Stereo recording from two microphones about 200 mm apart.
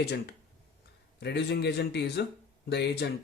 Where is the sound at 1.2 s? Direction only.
55° left (ahead or behind).